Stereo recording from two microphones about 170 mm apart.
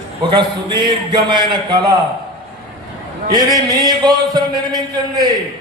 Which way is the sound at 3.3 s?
25° right (ahead or behind).